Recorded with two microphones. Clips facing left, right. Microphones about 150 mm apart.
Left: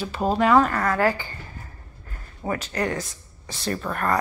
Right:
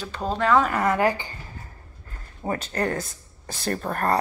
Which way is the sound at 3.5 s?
45° right (ahead or behind).